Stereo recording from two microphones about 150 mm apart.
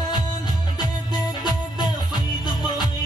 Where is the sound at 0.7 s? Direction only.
30° left (ahead or behind).